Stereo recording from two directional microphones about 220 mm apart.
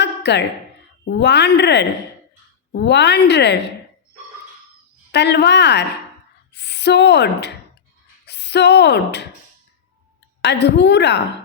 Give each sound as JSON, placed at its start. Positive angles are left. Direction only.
{"t": 0.0, "sound": "a sound", "side_deg": 50}
{"t": 1.0, "sound": "speech", "side_deg": 50}
{"t": 5.1, "sound": "speech", "side_deg": 50}
{"t": 10.4, "sound": "speech", "side_deg": 50}